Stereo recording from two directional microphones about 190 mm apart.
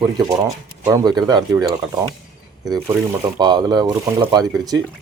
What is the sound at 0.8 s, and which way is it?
Speech, 20° right (ahead or behind).